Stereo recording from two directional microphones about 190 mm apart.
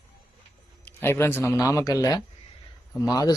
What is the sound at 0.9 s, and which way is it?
A man's voice, 10° left (ahead or behind).